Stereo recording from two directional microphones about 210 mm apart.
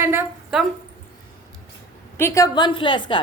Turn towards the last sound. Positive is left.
turn(degrees=20)  # may be behind; listen again after turning